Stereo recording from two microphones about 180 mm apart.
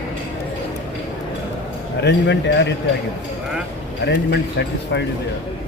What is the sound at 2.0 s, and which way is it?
Speech, 70° left (ahead or behind).